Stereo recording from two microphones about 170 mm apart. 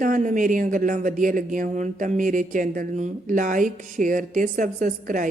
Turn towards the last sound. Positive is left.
turn(degrees=-50)  # may be behind; listen again after turning